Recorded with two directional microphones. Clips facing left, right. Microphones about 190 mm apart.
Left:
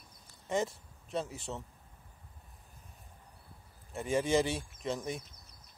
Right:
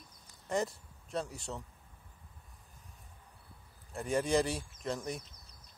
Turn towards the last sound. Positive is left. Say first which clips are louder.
# left 1 dB
turn(degrees=0)  # may be behind; listen again after turning